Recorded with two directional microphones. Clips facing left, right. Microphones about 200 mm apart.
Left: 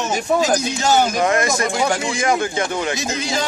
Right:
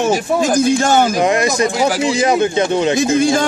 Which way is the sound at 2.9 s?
50° right (ahead or behind).